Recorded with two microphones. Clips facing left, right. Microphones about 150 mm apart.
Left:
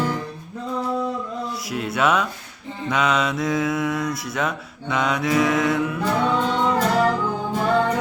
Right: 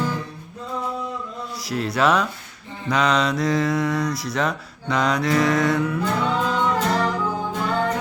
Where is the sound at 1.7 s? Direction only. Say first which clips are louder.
Right 2 dB; centre (ahead or behind).